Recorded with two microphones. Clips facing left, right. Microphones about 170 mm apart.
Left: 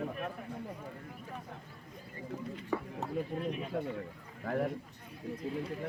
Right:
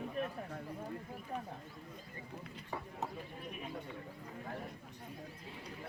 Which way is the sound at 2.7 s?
90° left.